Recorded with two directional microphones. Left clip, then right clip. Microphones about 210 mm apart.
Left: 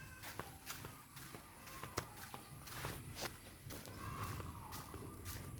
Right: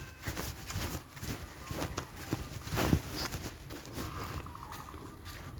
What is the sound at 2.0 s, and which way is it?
Run, 10° right (ahead or behind).